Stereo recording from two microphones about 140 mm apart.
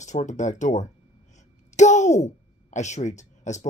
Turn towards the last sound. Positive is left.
turn(degrees=60)  # may be behind; listen again after turning